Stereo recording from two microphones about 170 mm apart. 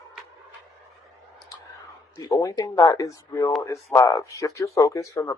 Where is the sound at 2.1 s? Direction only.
20° left (ahead or behind).